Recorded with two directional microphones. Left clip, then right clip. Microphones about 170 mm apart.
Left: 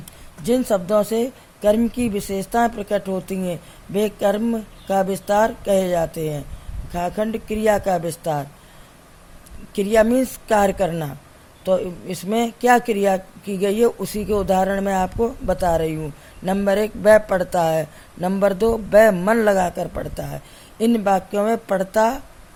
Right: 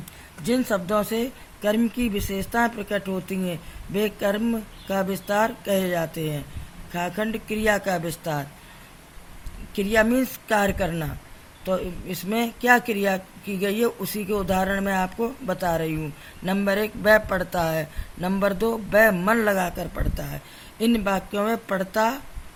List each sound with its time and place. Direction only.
0.4 s speech: 35° left (ahead or behind)
9.7 s speech: 40° left (ahead or behind)